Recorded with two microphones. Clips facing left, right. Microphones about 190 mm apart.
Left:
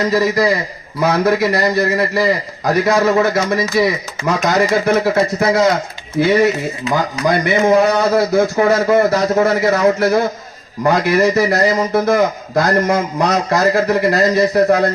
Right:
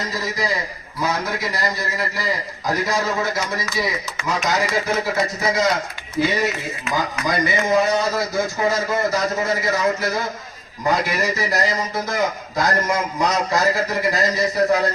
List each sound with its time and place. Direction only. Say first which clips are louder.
0.0 s a man's voice: left 11 dB; 65° left (ahead or behind)